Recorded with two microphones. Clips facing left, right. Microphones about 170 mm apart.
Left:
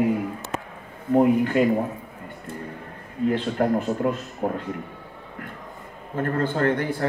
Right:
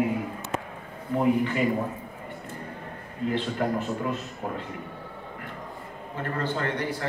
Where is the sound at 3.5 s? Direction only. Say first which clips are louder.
Left 5 dB; 45° left (ahead or behind).